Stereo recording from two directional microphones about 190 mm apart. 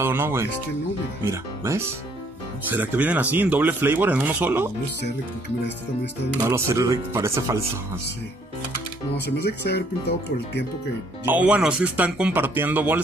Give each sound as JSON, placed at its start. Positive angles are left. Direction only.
{"t": 0.0, "sound": "speech", "side_deg": -10}
{"t": 6.5, "sound": "speech", "side_deg": -15}
{"t": 9.1, "sound": "speech", "side_deg": 60}
{"t": 11.2, "sound": "speech", "side_deg": -5}